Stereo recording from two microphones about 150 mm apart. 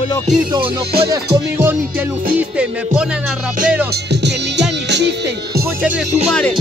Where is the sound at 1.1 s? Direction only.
15° right (ahead or behind).